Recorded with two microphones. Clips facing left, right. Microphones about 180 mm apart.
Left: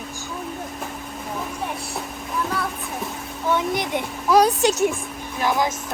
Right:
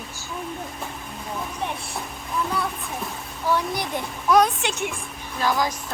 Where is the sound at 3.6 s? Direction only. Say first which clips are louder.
Left 3 dB; 20° left (ahead or behind); by 4.9 s 40° left (ahead or behind).